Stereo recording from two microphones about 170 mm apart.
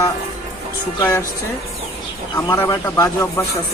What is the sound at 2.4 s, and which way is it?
Speech, 15° left (ahead or behind).